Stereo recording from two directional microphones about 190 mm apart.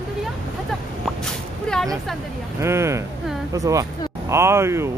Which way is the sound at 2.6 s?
15° right (ahead or behind).